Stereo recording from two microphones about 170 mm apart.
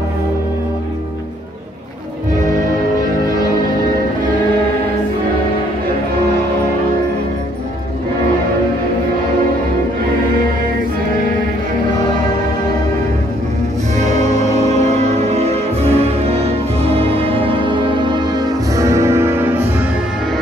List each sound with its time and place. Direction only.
14.3 s music: 40° right (ahead or behind); by 19.6 s 15° right (ahead or behind)